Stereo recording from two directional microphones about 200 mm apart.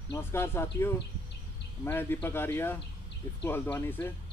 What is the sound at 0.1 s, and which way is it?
Speech, 10° left (ahead or behind).